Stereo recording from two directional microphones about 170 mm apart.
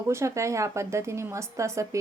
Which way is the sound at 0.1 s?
15° right (ahead or behind).